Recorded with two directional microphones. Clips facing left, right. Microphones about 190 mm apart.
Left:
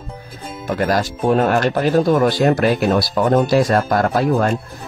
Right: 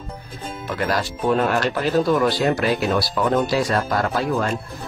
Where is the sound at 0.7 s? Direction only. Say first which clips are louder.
Left 5 dB; 45° left (ahead or behind).